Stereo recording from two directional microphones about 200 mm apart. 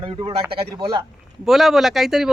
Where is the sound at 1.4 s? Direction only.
Centre (ahead or behind).